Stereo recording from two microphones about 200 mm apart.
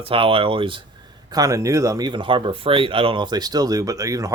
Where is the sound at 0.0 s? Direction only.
25° right (ahead or behind).